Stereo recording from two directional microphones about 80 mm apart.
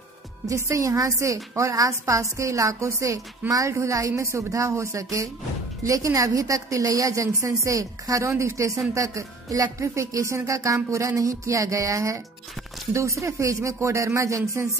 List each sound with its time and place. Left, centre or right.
0.5 s a woman's voice: right